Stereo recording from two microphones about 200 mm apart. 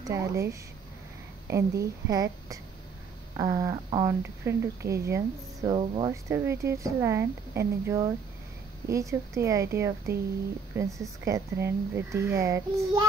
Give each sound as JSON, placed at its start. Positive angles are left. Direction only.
{"t": 0.0, "sound": "speech", "side_deg": -15}